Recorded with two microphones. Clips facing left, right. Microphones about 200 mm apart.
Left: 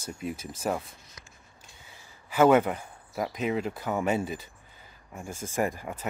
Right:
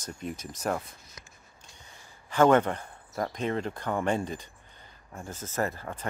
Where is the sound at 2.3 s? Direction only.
10° left (ahead or behind).